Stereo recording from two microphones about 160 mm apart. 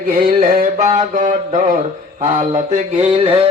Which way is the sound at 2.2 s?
50° right (ahead or behind).